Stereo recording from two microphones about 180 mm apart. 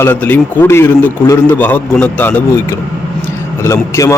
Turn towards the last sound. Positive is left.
turn(degrees=15)  # may be behind; listen again after turning